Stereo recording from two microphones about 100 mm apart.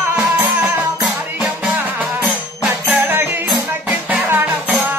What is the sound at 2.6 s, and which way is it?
Music, 20° right (ahead or behind).